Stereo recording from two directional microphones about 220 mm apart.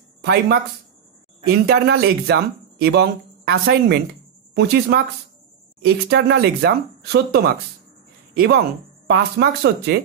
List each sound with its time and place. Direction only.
0.2 s a woman's voice: 50° right (ahead or behind)